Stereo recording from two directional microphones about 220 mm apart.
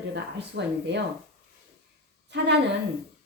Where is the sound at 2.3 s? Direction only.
50° right (ahead or behind).